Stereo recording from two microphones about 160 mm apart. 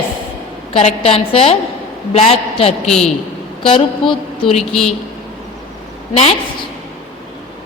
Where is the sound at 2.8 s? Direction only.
Centre (ahead or behind).